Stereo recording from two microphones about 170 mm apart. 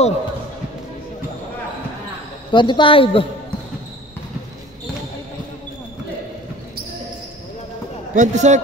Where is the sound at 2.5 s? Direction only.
30° left (ahead or behind).